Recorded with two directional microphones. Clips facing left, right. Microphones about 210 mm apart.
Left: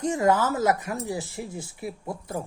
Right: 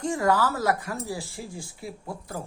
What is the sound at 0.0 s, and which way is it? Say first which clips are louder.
Speech: left 1 dB; 20° left (ahead or behind).